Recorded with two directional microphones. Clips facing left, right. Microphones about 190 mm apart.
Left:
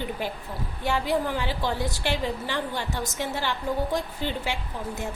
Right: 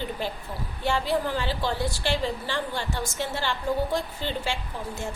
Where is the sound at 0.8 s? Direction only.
15° left (ahead or behind).